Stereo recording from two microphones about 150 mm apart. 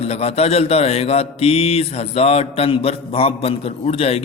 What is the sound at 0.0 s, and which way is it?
A man's voice, 45° left (ahead or behind).